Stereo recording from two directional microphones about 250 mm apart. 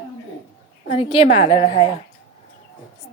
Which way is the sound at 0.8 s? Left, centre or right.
Left.